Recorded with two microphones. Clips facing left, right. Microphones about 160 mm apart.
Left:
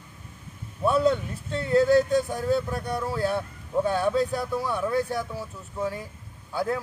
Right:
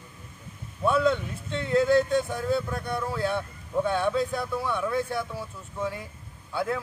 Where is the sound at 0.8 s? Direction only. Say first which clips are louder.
Left 1 dB; 40° left (ahead or behind).